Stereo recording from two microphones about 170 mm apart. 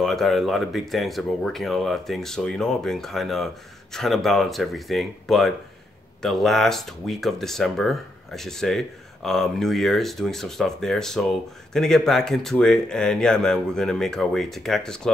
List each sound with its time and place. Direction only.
0.0 s speech: centre (ahead or behind)